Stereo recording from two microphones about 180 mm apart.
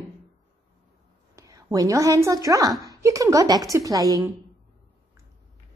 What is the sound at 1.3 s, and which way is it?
A woman's voice, 20° right (ahead or behind).